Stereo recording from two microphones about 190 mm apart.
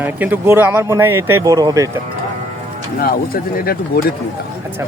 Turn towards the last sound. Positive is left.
turn(degrees=55)  # may be behind; listen again after turning